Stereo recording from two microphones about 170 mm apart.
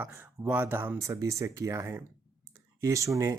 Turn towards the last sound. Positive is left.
turn(degrees=-20)  # may be behind; listen again after turning